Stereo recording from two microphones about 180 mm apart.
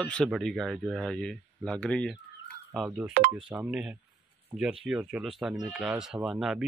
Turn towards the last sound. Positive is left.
turn(degrees=0)  # may be behind; listen again after turning